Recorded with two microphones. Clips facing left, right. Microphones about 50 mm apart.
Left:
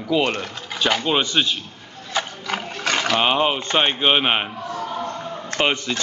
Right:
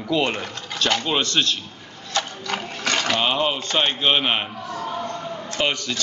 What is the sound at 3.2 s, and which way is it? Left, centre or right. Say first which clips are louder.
Speech: left 3 dB; left.